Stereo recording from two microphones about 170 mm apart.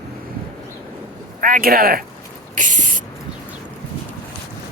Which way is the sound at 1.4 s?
55° right (ahead or behind).